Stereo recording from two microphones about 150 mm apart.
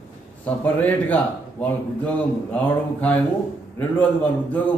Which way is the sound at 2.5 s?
10° left (ahead or behind).